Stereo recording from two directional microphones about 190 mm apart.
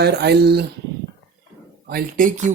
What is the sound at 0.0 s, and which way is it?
Speech, 60° right (ahead or behind).